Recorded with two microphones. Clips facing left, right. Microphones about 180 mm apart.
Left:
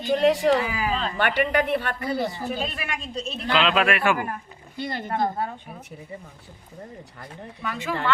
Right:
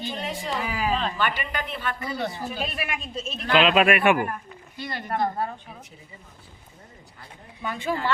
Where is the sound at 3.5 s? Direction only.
20° right (ahead or behind).